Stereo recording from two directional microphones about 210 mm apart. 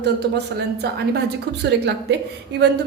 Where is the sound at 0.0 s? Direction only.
50° right (ahead or behind).